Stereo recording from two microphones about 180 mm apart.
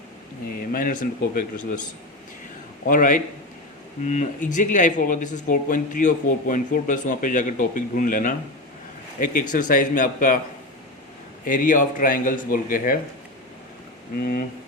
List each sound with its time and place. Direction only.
0.7 s speech: 50° left (ahead or behind)
2.8 s speech: 50° left (ahead or behind)
11.4 s speech: 45° left (ahead or behind)
14.2 s speech: 50° left (ahead or behind)